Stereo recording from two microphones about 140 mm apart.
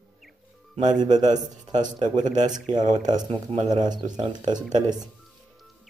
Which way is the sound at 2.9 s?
30° right (ahead or behind).